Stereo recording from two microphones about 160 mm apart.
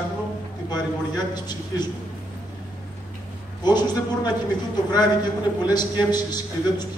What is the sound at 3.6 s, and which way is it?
A man's voice, 25° left (ahead or behind).